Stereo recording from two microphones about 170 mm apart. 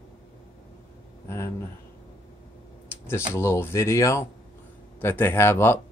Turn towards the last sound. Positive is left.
turn(degrees=15)  # may be behind; listen again after turning